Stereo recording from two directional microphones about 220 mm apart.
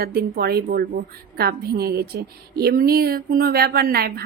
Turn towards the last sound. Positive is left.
turn(degrees=-45)  # may be behind; listen again after turning